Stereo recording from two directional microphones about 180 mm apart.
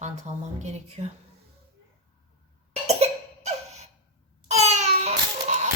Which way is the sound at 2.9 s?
40° right (ahead or behind).